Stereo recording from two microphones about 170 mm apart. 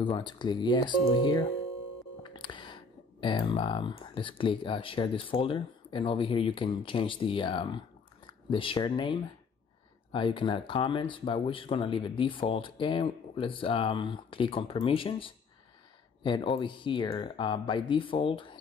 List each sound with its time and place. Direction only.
0.0 s speech: 25° left (ahead or behind)